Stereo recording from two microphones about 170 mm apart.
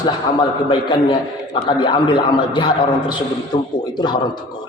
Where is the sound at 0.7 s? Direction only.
25° left (ahead or behind).